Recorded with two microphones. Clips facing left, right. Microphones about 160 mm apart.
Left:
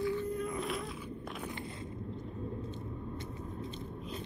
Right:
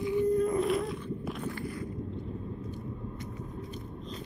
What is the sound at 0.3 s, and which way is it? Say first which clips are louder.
Boat: right 10 dB; 40° right (ahead or behind).